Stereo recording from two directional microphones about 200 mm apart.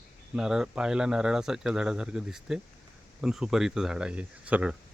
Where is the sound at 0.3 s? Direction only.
5° right (ahead or behind).